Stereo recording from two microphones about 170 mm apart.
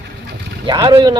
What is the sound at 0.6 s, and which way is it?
Speech, 20° right (ahead or behind).